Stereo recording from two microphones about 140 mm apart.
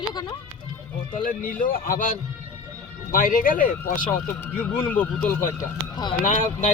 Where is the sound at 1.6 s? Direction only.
85° left.